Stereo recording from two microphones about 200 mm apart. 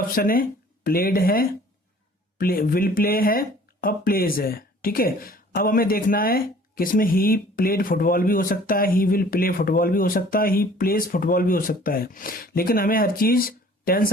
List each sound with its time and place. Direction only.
0.1 s speech: 45° left (ahead or behind)